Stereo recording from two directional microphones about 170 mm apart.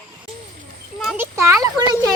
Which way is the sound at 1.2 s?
15° right (ahead or behind).